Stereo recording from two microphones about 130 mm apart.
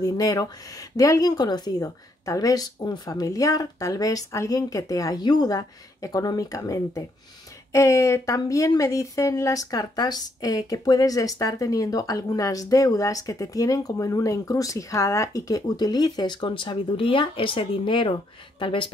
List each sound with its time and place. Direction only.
0.0 s speech: 30° left (ahead or behind)